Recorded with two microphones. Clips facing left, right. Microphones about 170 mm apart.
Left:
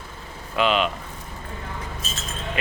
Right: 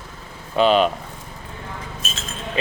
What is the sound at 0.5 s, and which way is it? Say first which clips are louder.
Speech: right 5 dB; 35° right (ahead or behind).